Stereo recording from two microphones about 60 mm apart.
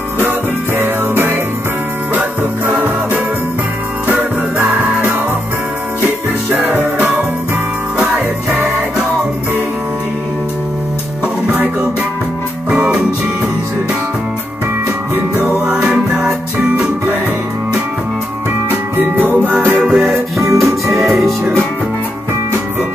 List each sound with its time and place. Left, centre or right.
0.7 s music: right
6.0 s music: right
12.6 s music: centre
15.6 s music: centre
18.7 s music: right
19.8 s music: centre
20.3 s music: right